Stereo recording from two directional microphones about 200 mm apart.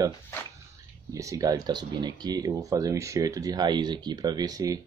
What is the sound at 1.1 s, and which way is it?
Speech, 15° right (ahead or behind).